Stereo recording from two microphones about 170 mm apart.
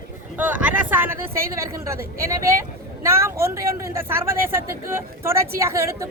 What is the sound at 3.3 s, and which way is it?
Speech, 15° right (ahead or behind).